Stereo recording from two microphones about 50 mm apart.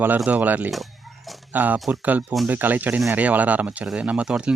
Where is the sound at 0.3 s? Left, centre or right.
Right.